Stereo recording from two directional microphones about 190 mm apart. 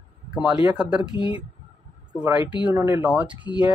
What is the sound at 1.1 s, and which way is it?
Speech, 25° left (ahead or behind).